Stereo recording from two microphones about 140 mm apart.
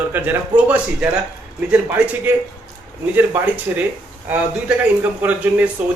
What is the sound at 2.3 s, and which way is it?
Speech, 15° right (ahead or behind).